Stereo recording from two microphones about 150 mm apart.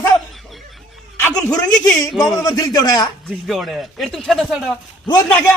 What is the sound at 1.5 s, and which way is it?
A man's voice, 25° left (ahead or behind).